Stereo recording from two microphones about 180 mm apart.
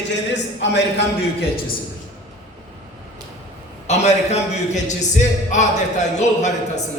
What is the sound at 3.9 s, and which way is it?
A man's voice, 40° left (ahead or behind).